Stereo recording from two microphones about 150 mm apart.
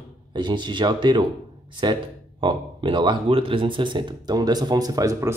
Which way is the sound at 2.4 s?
30° right (ahead or behind).